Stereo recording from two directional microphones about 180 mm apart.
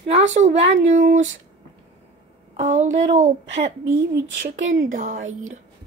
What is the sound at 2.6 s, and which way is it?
Speech, 40° right (ahead or behind).